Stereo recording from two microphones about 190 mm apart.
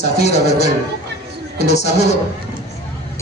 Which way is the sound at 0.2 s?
35° left (ahead or behind).